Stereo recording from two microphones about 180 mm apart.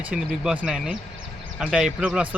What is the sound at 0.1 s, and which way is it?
Speech, 5° right (ahead or behind).